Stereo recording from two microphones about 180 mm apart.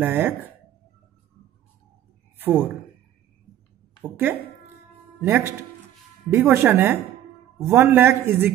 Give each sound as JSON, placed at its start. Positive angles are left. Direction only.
{"t": 0.0, "sound": "a man's voice", "side_deg": -10}
{"t": 2.3, "sound": "a woman's voice", "side_deg": -10}
{"t": 4.0, "sound": "a man's voice", "side_deg": -10}